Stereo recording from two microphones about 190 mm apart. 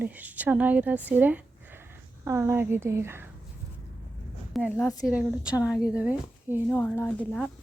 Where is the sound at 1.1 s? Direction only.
10° right (ahead or behind).